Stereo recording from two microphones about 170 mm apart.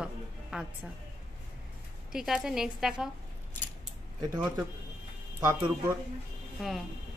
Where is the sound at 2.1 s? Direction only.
5° right (ahead or behind).